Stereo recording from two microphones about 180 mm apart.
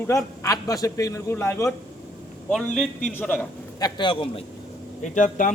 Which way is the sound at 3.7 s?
25° left (ahead or behind).